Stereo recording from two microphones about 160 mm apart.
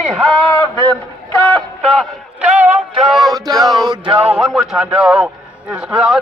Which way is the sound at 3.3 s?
25° right (ahead or behind).